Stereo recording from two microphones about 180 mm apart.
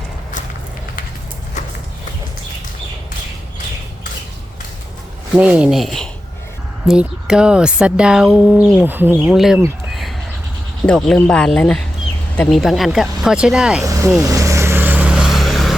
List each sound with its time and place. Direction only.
5.4 s speech: 5° right (ahead or behind)
9.9 s a sound: centre (ahead or behind)
10.8 s speech: 5° left (ahead or behind)
13.8 s speech: 20° right (ahead or behind)
14.3 s vehicle: 20° right (ahead or behind); by 15.7 s centre (ahead or behind)